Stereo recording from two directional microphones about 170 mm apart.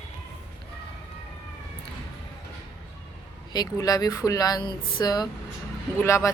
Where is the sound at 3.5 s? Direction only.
20° left (ahead or behind).